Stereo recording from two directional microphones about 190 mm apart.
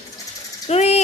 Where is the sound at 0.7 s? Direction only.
35° left (ahead or behind).